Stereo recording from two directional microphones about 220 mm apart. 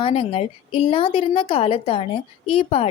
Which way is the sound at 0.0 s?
25° left (ahead or behind).